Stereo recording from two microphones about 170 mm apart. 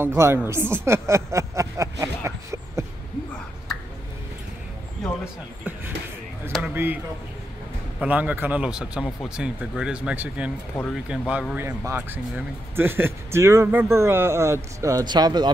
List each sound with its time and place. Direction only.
0.0 s speech: 15° right (ahead or behind)
5.0 s a sound: 5° right (ahead or behind)
8.0 s speech: 10° right (ahead or behind); by 15.5 s 25° right (ahead or behind)